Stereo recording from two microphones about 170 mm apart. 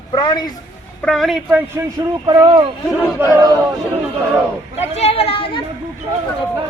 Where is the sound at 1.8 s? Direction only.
15° right (ahead or behind).